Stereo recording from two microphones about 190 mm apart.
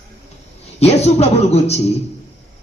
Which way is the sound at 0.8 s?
35° left (ahead or behind).